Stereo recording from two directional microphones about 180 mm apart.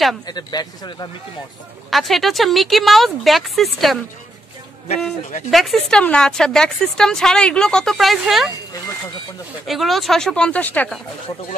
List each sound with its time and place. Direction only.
0.3 s a man's voice: 20° left (ahead or behind)
1.9 s a woman's voice: centre (ahead or behind)
5.5 s a woman's voice: centre (ahead or behind)
9.7 s a woman's voice: centre (ahead or behind)